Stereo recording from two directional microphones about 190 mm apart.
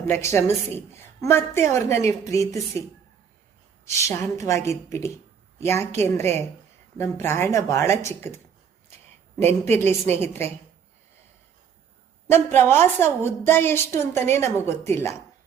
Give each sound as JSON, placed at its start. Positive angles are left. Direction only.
{"t": 0.0, "sound": "a woman's voice", "side_deg": 15}
{"t": 3.8, "sound": "a woman's voice", "side_deg": 15}
{"t": 9.4, "sound": "a woman's voice", "side_deg": 10}
{"t": 12.3, "sound": "a woman's voice", "side_deg": 10}